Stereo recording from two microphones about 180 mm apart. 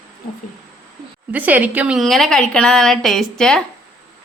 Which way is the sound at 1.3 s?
10° right (ahead or behind).